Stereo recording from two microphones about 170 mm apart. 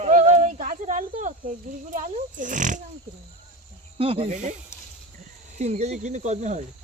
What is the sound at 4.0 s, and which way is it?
Speech, 35° right (ahead or behind).